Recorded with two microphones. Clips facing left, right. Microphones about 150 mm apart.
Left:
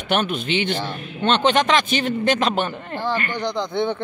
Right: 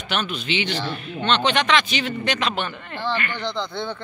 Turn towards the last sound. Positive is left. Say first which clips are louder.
# left 5 dB
turn(degrees=20)  # may be behind; listen again after turning